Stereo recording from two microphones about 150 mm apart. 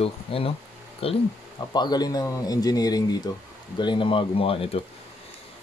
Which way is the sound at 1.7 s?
25° left (ahead or behind).